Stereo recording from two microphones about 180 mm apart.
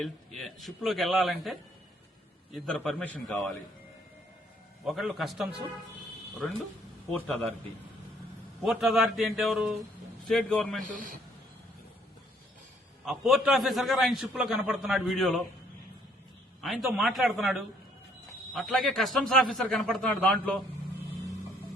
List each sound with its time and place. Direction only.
0.3 s a man's voice: centre (ahead or behind)
2.6 s a man's voice: 5° left (ahead or behind)
4.9 s a man's voice: centre (ahead or behind)
7.1 s a man's voice: 5° left (ahead or behind)
8.6 s a man's voice: centre (ahead or behind)
10.8 s a man's voice: 50° right (ahead or behind)
13.1 s a man's voice: centre (ahead or behind)
16.6 s a man's voice: centre (ahead or behind)